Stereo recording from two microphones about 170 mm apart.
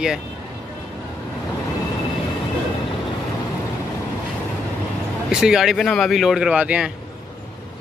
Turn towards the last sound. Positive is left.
turn(degrees=-5)  # may be behind; listen again after turning